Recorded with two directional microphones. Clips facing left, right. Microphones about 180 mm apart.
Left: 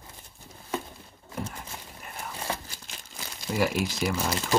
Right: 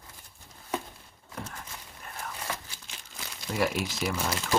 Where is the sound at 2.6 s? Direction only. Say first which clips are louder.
Left 3 dB; 40° left (ahead or behind).